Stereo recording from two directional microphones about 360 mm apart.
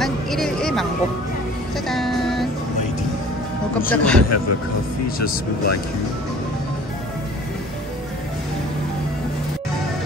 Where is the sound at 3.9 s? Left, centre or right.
Centre.